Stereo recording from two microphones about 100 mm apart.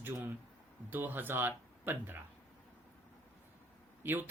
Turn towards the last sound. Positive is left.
turn(degrees=-20)  # may be behind; listen again after turning